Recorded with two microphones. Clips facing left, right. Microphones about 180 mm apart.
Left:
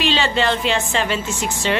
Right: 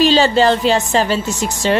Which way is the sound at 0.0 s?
40° right (ahead or behind).